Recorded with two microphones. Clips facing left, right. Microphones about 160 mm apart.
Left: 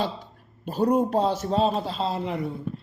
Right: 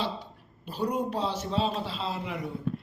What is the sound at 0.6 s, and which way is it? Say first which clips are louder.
A man's voice: left 8 dB; 45° left (ahead or behind).